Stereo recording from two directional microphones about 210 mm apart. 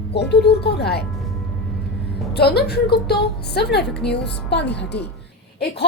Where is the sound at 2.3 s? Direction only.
50° left (ahead or behind).